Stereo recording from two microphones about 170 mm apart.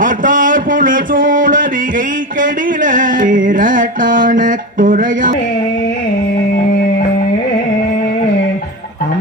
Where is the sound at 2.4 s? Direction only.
50° right (ahead or behind).